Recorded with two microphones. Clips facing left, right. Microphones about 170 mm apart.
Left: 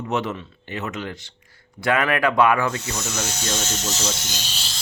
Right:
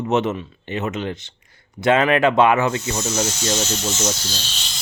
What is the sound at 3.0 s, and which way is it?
Speech, 35° right (ahead or behind).